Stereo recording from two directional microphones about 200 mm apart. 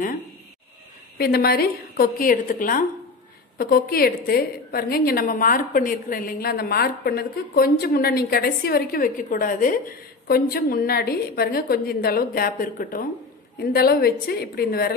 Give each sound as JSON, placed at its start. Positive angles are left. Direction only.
{"t": 1.1, "sound": "a woman's voice", "side_deg": 50}